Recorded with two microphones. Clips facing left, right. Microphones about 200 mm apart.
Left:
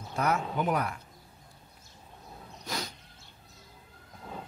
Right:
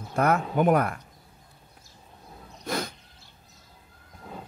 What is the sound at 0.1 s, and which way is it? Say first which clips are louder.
Speech: right 6 dB; 55° right (ahead or behind).